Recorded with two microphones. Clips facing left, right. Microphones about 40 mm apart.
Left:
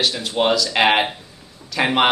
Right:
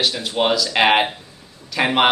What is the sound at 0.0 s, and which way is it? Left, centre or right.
Speech, centre.